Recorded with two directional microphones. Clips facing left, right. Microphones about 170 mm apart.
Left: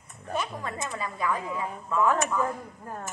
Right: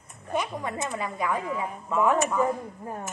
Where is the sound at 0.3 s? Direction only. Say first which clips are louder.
Right 3 dB; 15° right (ahead or behind).